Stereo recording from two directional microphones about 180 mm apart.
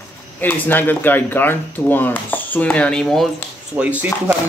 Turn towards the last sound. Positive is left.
turn(degrees=-10)  # may be behind; listen again after turning